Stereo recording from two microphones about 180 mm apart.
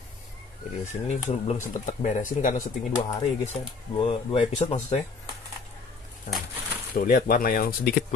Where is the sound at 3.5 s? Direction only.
35° left (ahead or behind).